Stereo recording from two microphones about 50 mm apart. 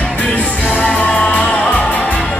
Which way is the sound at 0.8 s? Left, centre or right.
Left.